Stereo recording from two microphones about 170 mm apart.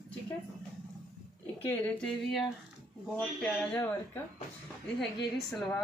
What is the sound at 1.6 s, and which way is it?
Speech, 10° left (ahead or behind).